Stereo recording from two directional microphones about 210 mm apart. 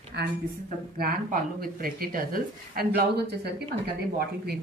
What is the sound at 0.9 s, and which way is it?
Speech, 45° right (ahead or behind).